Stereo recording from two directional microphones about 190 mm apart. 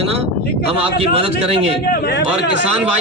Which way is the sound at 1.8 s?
55° left (ahead or behind).